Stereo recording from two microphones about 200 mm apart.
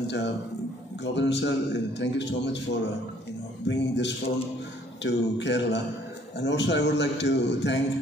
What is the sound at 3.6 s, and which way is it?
A man's voice, 60° left (ahead or behind).